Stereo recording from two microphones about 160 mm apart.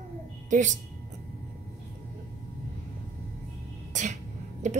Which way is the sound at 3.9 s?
50° right (ahead or behind).